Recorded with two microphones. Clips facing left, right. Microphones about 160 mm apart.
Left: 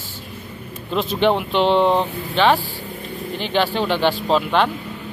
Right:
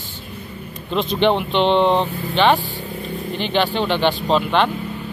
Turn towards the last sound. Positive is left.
turn(degrees=5)  # may be behind; listen again after turning